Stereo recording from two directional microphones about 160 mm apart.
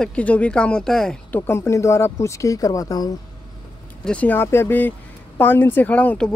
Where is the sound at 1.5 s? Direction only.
15° left (ahead or behind).